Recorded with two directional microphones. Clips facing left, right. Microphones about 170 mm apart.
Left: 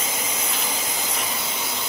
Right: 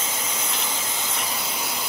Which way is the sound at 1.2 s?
Centre (ahead or behind).